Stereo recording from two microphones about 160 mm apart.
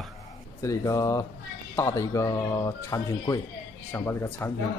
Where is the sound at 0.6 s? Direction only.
20° left (ahead or behind).